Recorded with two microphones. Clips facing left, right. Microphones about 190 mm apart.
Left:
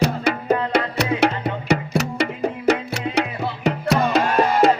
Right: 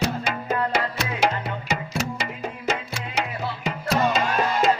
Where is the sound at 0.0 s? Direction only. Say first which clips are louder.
Left 5 dB; 65° left (ahead or behind).